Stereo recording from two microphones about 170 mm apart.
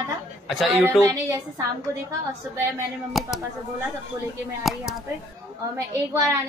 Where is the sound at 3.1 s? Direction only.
Centre (ahead or behind).